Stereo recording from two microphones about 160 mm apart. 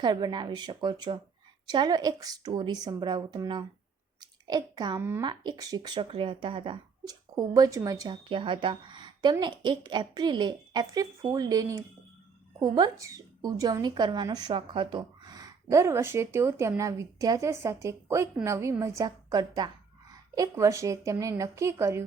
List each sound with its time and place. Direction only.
0.0 s speech: 25° right (ahead or behind)
4.2 s a sound: 25° right (ahead or behind)
4.9 s speech: 15° right (ahead or behind)
5.2 s speech: 30° right (ahead or behind)